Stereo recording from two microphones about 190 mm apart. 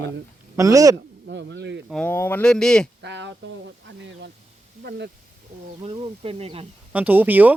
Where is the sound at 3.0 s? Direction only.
65° right (ahead or behind).